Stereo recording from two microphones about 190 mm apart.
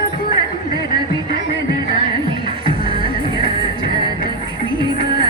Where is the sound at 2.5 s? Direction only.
25° right (ahead or behind).